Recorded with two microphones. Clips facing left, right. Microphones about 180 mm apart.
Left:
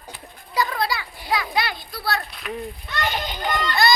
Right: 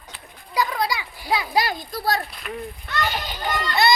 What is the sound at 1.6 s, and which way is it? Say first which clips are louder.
Speech: right 3 dB; 40° right (ahead or behind).